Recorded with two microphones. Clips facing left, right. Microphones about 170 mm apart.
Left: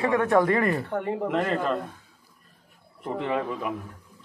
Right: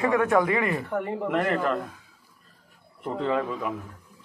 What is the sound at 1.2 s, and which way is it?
Speech, 20° left (ahead or behind).